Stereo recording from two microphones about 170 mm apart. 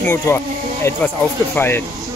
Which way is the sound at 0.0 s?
15° left (ahead or behind).